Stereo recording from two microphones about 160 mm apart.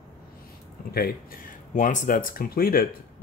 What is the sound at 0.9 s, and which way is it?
Speech, 65° left (ahead or behind).